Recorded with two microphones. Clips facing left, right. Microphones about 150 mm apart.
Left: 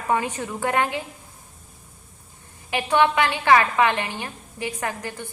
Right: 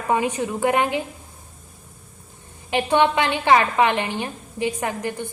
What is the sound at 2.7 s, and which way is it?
A woman's voice, 25° right (ahead or behind).